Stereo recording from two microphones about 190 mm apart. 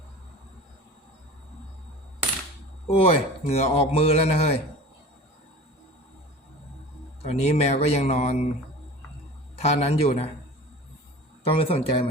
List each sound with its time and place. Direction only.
3.0 s a man's voice: 35° left (ahead or behind)
7.3 s a man's voice: 35° left (ahead or behind)
9.6 s a man's voice: 35° left (ahead or behind)
11.4 s speech: 30° left (ahead or behind)